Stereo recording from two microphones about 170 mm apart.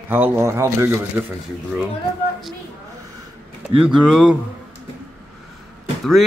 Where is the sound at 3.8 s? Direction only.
5° right (ahead or behind).